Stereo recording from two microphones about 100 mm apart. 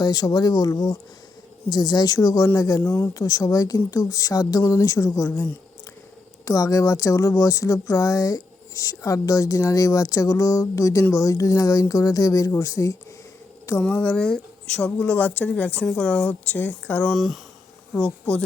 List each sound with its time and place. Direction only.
0.0 s speech: 40° left (ahead or behind)
6.4 s speech: 35° left (ahead or behind)
13.8 s speech: 10° left (ahead or behind)
17.1 s speech: centre (ahead or behind)